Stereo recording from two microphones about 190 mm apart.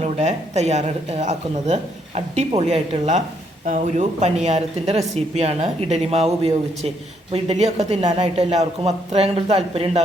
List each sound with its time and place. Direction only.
0.0 s speech: 35° right (ahead or behind)